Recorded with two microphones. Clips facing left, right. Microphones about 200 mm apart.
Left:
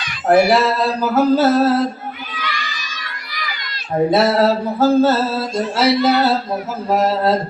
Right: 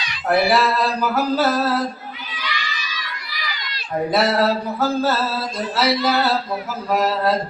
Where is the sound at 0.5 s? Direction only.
25° left (ahead or behind).